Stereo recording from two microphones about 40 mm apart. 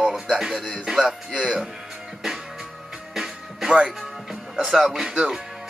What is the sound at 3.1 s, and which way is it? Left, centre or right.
Music, centre.